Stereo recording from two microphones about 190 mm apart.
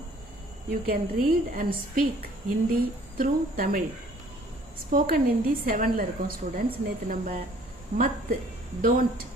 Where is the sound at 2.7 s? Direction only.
50° right (ahead or behind).